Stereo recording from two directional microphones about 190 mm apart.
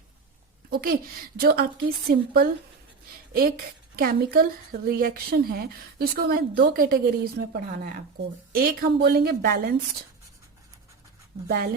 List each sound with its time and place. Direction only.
0.7 s a woman's voice: 50° right (ahead or behind)
11.4 s speech: 55° right (ahead or behind)